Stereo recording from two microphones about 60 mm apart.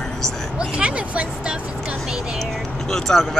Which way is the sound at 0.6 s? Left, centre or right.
Centre.